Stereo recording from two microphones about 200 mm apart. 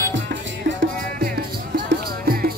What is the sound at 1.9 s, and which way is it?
Music, 50° right (ahead or behind).